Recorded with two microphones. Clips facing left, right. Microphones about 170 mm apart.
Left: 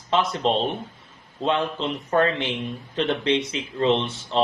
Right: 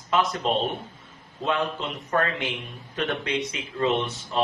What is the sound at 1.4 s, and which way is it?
Speech, 30° left (ahead or behind).